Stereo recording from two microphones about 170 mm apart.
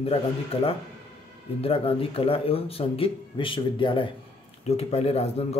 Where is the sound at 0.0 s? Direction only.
35° left (ahead or behind).